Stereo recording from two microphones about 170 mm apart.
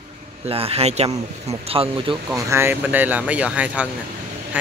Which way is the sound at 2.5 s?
15° right (ahead or behind).